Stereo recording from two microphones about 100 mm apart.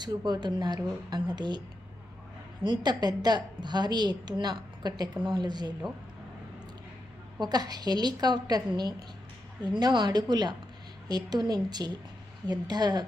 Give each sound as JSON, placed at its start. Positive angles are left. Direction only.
{"t": 0.0, "sound": "a woman's voice", "side_deg": -45}
{"t": 2.6, "sound": "a woman's voice", "side_deg": -45}
{"t": 7.3, "sound": "a woman's voice", "side_deg": -45}